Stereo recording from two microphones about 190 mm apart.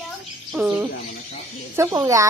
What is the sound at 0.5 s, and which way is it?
Speech, 5° right (ahead or behind).